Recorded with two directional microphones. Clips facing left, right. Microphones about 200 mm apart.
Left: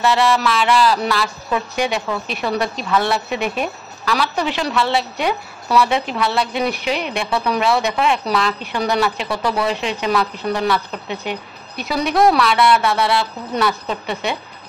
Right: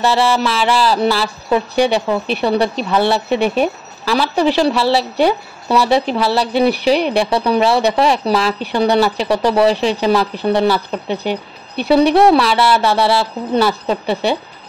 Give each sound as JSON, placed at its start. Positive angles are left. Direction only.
{"t": 0.0, "sound": "speech", "side_deg": -30}